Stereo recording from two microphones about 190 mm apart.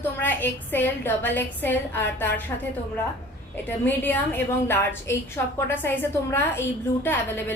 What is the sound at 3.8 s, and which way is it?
A woman's voice, 10° left (ahead or behind).